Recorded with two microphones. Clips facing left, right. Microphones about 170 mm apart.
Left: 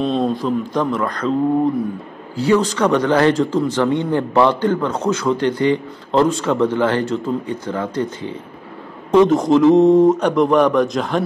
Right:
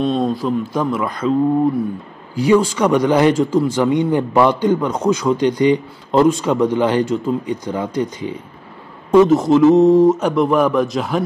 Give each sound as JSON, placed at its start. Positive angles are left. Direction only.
{"t": 0.0, "sound": "a man's voice", "side_deg": 0}
{"t": 2.3, "sound": "speech", "side_deg": -10}
{"t": 9.1, "sound": "a man's voice", "side_deg": -5}